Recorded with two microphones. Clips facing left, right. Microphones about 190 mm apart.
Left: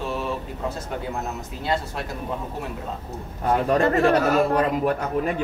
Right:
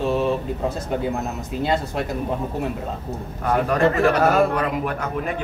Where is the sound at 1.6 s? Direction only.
20° right (ahead or behind).